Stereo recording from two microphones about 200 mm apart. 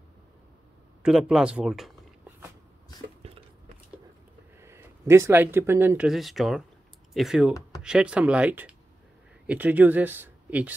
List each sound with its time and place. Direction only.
1.0 s speech: 5° right (ahead or behind)
3.2 s a sound: 30° right (ahead or behind)
4.6 s speech: 10° right (ahead or behind)